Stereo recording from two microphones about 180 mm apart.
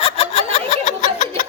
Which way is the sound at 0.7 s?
40° left (ahead or behind).